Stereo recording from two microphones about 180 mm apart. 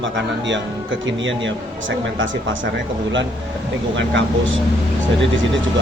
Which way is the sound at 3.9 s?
90° right.